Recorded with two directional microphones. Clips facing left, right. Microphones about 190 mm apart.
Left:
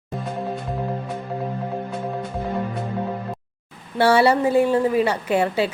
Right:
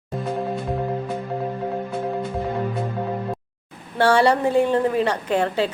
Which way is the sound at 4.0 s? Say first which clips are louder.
Left 1 dB; 5° left (ahead or behind).